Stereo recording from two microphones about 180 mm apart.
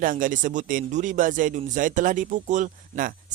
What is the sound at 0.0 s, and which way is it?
Speech, 50° right (ahead or behind).